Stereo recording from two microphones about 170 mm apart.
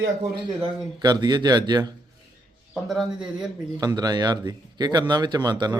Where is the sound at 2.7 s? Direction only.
Centre (ahead or behind).